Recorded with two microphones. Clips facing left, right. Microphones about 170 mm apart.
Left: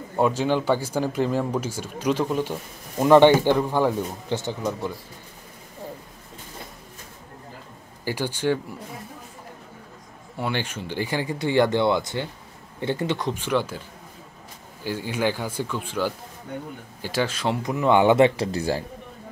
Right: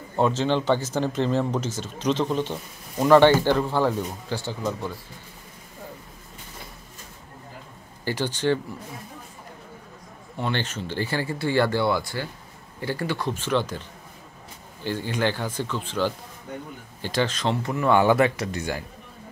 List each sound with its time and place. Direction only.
0.1 s speech: 10° left (ahead or behind)
8.0 s speech: 10° left (ahead or behind)
10.3 s speech: 10° left (ahead or behind); by 18.9 s 30° left (ahead or behind)